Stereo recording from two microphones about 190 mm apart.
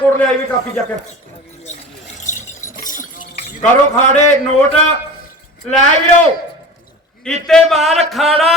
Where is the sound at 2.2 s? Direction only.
40° left (ahead or behind).